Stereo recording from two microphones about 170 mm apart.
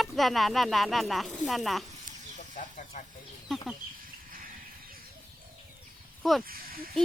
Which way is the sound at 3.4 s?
Centre (ahead or behind).